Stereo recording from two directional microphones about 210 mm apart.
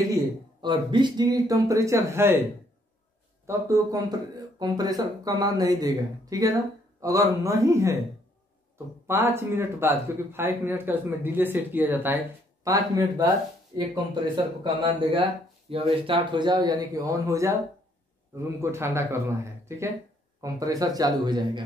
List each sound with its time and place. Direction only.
0.1 s a man's voice: 20° right (ahead or behind)
3.4 s a man's voice: 15° right (ahead or behind)
20.3 s a man's voice: 15° right (ahead or behind)